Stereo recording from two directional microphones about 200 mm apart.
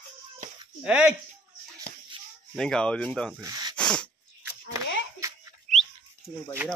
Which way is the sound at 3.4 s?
20° right (ahead or behind).